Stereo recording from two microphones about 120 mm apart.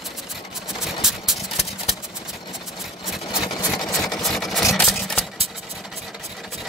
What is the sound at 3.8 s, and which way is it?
Sewing machine, centre (ahead or behind).